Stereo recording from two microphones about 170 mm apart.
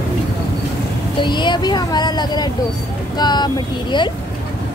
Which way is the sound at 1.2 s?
25° left (ahead or behind).